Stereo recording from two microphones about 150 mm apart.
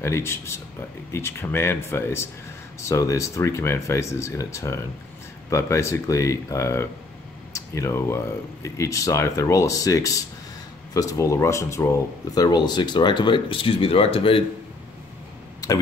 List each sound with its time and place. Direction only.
0.0 s speech: 15° left (ahead or behind); by 14.4 s 40° left (ahead or behind)